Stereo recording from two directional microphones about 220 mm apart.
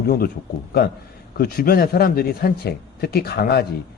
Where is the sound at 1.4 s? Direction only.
40° left (ahead or behind).